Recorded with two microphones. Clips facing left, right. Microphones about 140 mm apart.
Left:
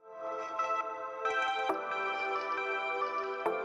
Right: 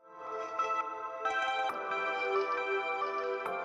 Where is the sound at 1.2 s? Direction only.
Centre (ahead or behind).